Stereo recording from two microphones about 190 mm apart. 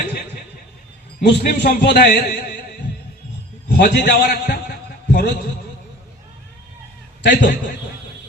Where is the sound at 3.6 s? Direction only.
60° left (ahead or behind).